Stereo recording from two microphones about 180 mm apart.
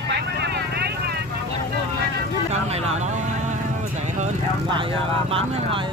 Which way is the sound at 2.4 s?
35° right (ahead or behind).